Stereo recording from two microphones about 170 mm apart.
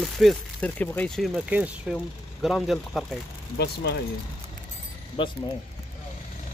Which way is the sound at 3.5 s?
75° left (ahead or behind).